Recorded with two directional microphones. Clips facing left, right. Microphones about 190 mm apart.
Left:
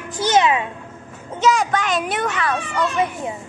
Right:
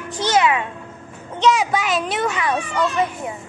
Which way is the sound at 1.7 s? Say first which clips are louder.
Even; 5° right (ahead or behind).